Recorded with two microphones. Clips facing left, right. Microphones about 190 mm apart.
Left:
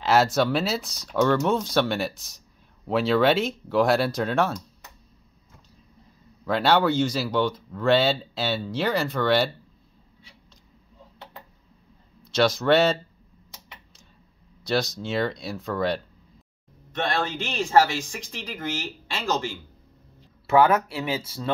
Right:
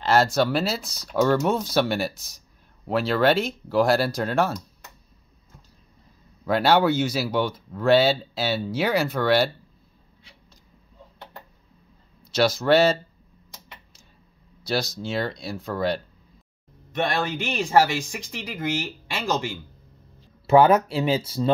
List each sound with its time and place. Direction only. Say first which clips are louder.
0.0 s speech: even; centre (ahead or behind)
6.4 s speech: right 2 dB; 5° right (ahead or behind)
12.3 s speech: right 1 dB; 5° right (ahead or behind)
14.6 s speech: left 1 dB; centre (ahead or behind); by 21.5 s 20° right (ahead or behind)